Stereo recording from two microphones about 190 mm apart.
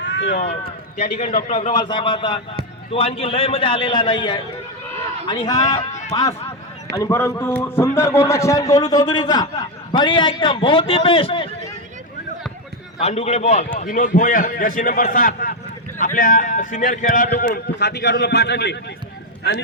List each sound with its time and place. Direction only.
0.0 s run: 65° left (ahead or behind)
1.5 s a man's voice: 35° left (ahead or behind)
1.7 s a man's voice: 25° left (ahead or behind)
5.6 s speech: 35° left (ahead or behind)
6.9 s a man's voice: 15° left (ahead or behind)
13.0 s a man's voice: 35° left (ahead or behind); by 17.6 s 50° left (ahead or behind)
17.7 s a man's voice: 60° left (ahead or behind)